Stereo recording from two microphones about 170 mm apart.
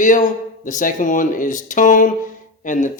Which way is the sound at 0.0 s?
50° left (ahead or behind).